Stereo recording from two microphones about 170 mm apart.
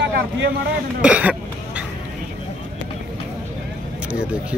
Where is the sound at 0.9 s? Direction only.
5° right (ahead or behind).